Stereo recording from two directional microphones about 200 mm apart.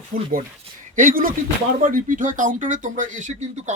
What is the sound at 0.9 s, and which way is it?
Speech, 40° right (ahead or behind).